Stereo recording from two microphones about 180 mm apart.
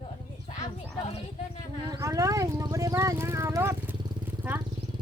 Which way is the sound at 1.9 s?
20° right (ahead or behind).